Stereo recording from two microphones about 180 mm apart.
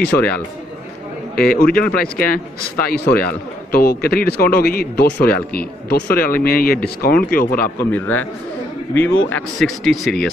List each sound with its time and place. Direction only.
0.0 s a man's voice: 10° left (ahead or behind)
1.3 s speech: 55° left (ahead or behind)
3.7 s speech: 55° left (ahead or behind)
7.8 s a man's voice: 10° left (ahead or behind)
9.6 s speech: centre (ahead or behind)